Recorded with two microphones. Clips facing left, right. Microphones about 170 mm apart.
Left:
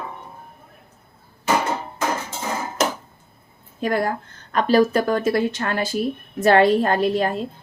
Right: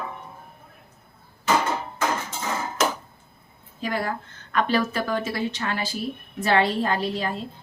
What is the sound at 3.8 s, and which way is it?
Speech, 50° left (ahead or behind).